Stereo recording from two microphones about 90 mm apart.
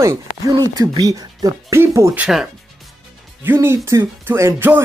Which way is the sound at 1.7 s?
30° right (ahead or behind).